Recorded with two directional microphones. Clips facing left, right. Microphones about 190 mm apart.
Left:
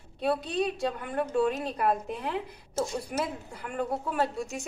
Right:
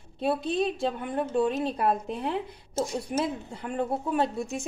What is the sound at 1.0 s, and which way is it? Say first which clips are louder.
A woman's voice: even; 20° right (ahead or behind).